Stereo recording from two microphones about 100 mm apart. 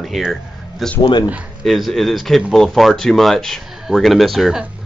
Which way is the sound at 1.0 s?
50° left (ahead or behind).